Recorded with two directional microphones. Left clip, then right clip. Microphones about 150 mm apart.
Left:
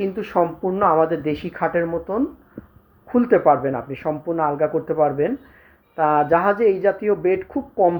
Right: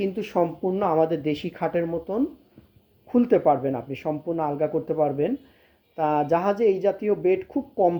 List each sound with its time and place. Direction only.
0.0 s speech: 30° right (ahead or behind)
3.1 s speech: 20° right (ahead or behind)